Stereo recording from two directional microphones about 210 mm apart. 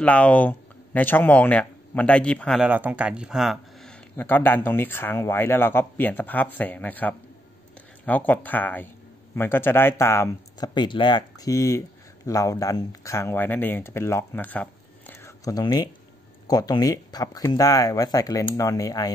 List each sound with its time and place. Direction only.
0.0 s speech: 5° left (ahead or behind)
4.2 s a man's voice: 10° left (ahead or behind)